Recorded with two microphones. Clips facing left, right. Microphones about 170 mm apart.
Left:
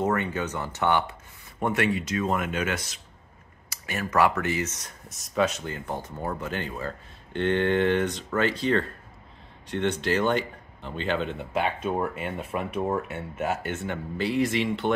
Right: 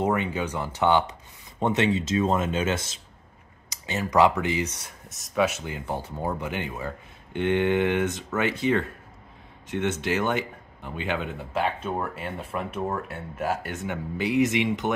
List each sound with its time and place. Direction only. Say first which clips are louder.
0.0 s speech: right 1 dB; 15° right (ahead or behind)
5.1 s speech: right 1 dB; centre (ahead or behind)
13.7 s speech: even; 15° right (ahead or behind)